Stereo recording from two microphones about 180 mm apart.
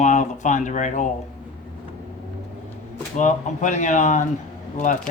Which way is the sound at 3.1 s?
45° left (ahead or behind).